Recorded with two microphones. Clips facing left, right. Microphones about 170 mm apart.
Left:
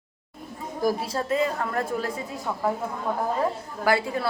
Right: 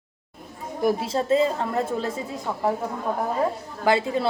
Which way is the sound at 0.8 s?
25° right (ahead or behind).